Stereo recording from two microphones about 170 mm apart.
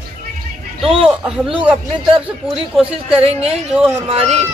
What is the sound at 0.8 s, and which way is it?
Speech, 5° right (ahead or behind).